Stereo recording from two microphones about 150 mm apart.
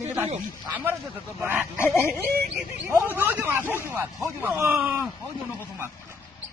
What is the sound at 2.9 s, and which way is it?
Speech, 15° right (ahead or behind).